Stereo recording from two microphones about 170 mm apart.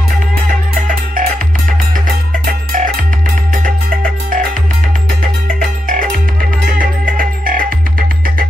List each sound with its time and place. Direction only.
0.5 s music: 50° right (ahead or behind)
2.4 s music: 55° right (ahead or behind)
6.8 s music: 55° right (ahead or behind)